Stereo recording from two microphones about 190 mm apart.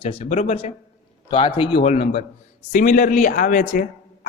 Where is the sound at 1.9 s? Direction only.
35° left (ahead or behind).